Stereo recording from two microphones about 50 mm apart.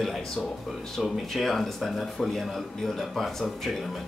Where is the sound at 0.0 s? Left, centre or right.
Centre.